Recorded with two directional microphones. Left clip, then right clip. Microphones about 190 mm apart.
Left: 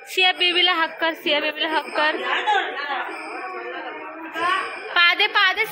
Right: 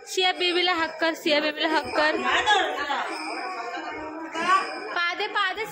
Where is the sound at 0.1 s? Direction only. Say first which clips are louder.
Left 5 dB; 10° right (ahead or behind).